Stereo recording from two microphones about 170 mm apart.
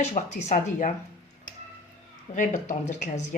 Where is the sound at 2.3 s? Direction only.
45° left (ahead or behind).